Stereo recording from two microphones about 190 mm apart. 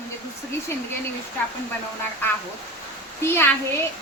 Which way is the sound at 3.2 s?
10° left (ahead or behind).